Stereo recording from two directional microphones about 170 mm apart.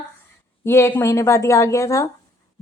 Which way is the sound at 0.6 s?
15° left (ahead or behind).